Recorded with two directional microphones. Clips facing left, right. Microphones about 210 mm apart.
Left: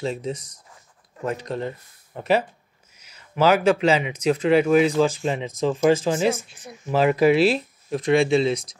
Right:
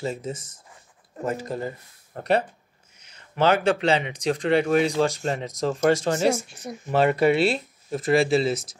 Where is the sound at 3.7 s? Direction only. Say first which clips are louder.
Left 2 dB; 35° right (ahead or behind).